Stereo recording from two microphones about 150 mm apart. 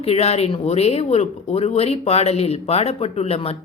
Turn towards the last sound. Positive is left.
turn(degrees=40)  # may be behind; listen again after turning